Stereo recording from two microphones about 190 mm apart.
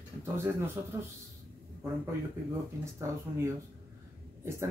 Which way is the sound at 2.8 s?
15° right (ahead or behind).